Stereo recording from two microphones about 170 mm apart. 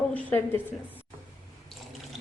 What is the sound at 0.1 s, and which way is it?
Speech, 10° left (ahead or behind).